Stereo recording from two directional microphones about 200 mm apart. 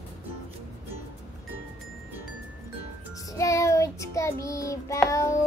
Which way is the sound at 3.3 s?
15° left (ahead or behind).